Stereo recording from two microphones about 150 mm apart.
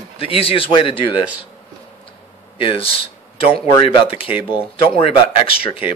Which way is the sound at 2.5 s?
35° left (ahead or behind).